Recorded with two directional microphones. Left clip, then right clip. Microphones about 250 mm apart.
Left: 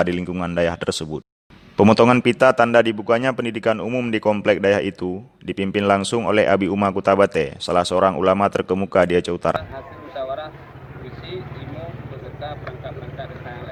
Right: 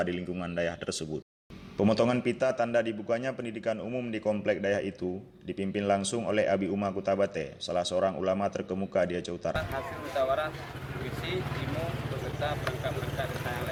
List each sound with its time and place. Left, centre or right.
0.0 s speech: left
10.2 s speech: centre